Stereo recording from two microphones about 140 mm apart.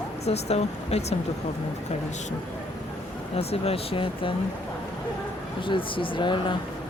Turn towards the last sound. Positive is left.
turn(degrees=35)  # may be behind; listen again after turning